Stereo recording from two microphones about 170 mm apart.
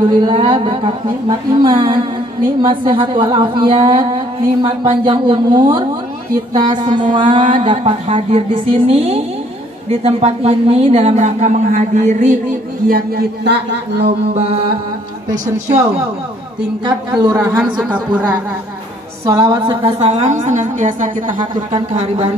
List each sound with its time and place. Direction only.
0.2 s a woman's voice: 25° right (ahead or behind); by 12.4 s 40° right (ahead or behind)
12.8 s speech: 70° right (ahead or behind)
14.3 s a woman's voice: 35° right (ahead or behind)
16.8 s a woman's voice: 25° right (ahead or behind)
19.2 s a woman's voice: 20° right (ahead or behind)
19.7 s a woman's voice: 35° right (ahead or behind)
21.3 s a woman's voice: 30° right (ahead or behind)
21.9 s a woman's voice: 40° right (ahead or behind)